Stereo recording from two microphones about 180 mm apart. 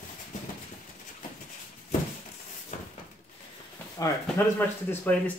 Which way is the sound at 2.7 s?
40° left (ahead or behind).